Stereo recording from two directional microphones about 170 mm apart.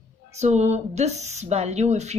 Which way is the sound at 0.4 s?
40° right (ahead or behind).